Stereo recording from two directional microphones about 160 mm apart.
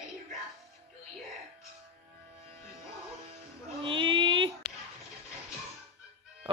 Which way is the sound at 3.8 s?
30° right (ahead or behind).